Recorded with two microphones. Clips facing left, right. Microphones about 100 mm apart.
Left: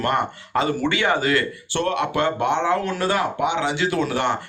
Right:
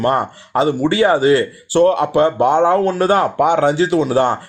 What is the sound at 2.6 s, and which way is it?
Speech, 45° right (ahead or behind).